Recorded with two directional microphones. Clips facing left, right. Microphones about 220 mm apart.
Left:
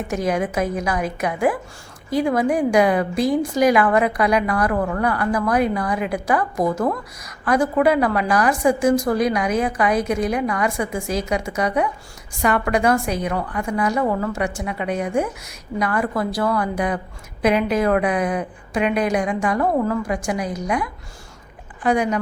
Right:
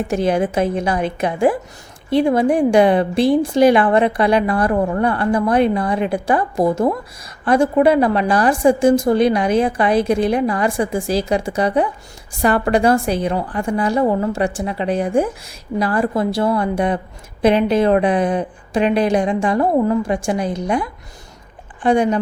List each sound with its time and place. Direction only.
0.1 s a woman's voice: 30° right (ahead or behind)